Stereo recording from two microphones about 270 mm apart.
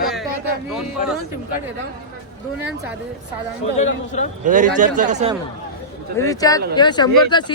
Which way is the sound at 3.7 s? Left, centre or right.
Left.